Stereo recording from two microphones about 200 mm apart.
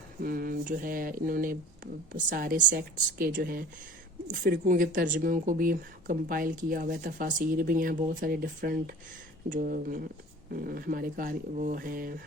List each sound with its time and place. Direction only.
0.2 s speech: 45° right (ahead or behind)